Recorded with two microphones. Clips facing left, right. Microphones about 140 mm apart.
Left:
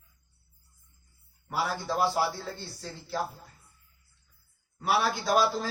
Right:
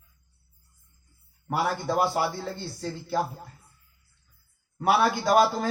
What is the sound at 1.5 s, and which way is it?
Speech, 55° right (ahead or behind).